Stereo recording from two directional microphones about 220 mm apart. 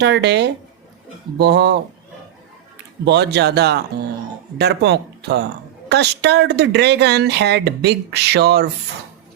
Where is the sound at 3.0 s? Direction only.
50° right (ahead or behind).